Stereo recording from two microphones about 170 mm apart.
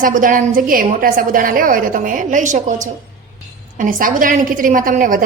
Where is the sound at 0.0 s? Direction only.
55° right (ahead or behind).